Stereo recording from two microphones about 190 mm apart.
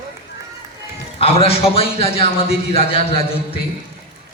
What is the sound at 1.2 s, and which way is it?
A man's voice, 30° left (ahead or behind).